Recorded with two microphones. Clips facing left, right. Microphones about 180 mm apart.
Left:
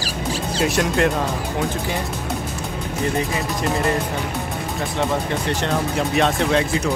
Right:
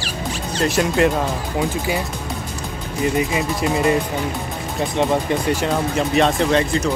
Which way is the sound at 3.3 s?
5° right (ahead or behind).